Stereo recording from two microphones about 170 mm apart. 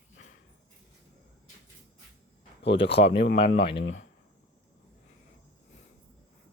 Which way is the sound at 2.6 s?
35° left (ahead or behind).